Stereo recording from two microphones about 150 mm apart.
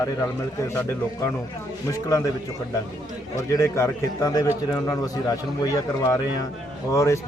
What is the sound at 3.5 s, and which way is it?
Speech, 20° left (ahead or behind).